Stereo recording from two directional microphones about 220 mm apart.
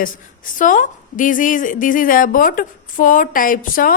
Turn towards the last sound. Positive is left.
turn(degrees=40)  # may be behind; listen again after turning